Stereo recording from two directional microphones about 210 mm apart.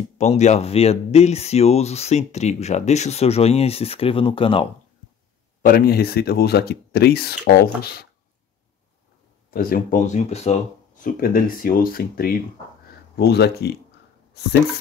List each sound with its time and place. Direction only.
0.2 s speech: 35° left (ahead or behind)
5.6 s speech: 45° left (ahead or behind)
9.5 s speech: 45° left (ahead or behind)
11.1 s speech: 45° left (ahead or behind)